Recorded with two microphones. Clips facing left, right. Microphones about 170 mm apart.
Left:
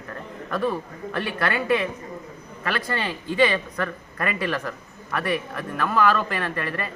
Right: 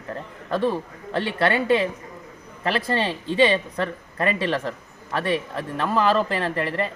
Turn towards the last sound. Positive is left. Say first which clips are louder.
# right 4 dB
turn(degrees=-25)  # may be behind; listen again after turning